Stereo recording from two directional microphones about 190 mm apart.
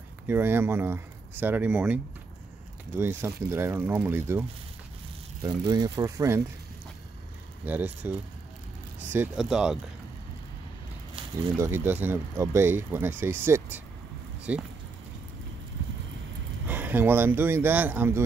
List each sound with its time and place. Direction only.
0.3 s speech: 10° right (ahead or behind)
3.0 s speech: 10° right (ahead or behind)
7.6 s speech: 10° right (ahead or behind)
9.1 s speech: 5° right (ahead or behind)
11.5 s speech: 15° right (ahead or behind)
16.6 s speech: 10° right (ahead or behind)